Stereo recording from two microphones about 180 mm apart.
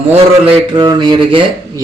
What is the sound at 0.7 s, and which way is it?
Speech, 25° right (ahead or behind).